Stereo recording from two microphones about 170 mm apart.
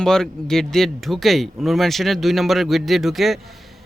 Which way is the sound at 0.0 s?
5° left (ahead or behind).